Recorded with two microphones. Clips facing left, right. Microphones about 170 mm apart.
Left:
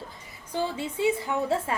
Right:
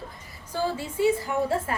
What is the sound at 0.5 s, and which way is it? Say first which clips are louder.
A woman's voice: right 2 dB; 20° left (ahead or behind).